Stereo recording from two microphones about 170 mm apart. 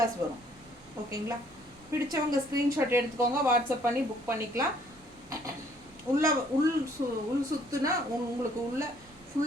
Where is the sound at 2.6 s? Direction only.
15° right (ahead or behind).